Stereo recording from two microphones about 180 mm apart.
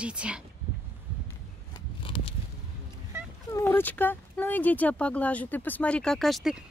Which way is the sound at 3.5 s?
15° left (ahead or behind).